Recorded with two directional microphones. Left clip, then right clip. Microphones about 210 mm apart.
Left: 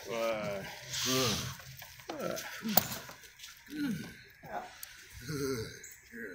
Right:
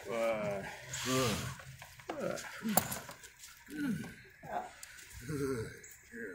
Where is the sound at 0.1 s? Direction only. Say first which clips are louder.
Even; 25° left (ahead or behind).